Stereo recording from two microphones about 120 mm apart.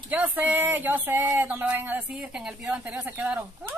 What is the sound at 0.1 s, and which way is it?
A man's voice, 15° right (ahead or behind).